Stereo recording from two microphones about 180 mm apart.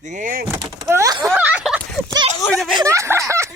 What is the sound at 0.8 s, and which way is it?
Speech, 15° right (ahead or behind).